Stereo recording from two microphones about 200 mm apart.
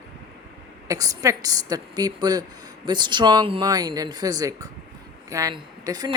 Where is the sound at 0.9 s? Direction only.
15° right (ahead or behind).